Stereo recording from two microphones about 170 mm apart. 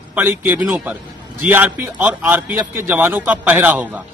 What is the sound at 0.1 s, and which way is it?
A man's voice, 10° right (ahead or behind).